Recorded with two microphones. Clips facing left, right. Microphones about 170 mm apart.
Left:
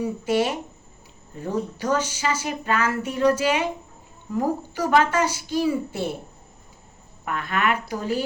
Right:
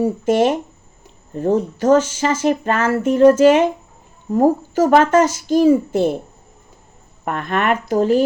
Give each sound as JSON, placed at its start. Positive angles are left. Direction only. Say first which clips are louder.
{"t": 0.0, "sound": "speech", "louder": "right 7 dB", "side_deg": -50}
{"t": 7.3, "sound": "speech", "louder": "right 5 dB", "side_deg": -45}